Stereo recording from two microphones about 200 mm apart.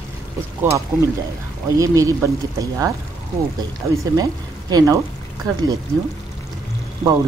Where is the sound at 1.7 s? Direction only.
15° right (ahead or behind).